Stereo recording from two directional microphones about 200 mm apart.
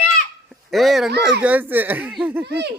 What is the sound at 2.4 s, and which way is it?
Speech, 55° right (ahead or behind).